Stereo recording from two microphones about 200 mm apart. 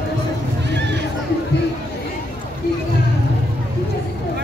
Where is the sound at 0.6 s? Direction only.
60° right (ahead or behind).